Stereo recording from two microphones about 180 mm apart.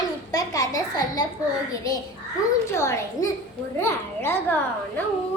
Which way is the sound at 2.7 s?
15° left (ahead or behind).